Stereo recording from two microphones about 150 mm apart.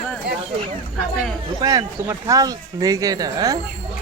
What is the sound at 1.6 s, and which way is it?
Speech, 25° right (ahead or behind).